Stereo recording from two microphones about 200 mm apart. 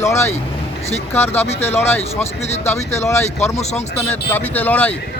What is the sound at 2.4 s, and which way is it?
Speech, 35° left (ahead or behind).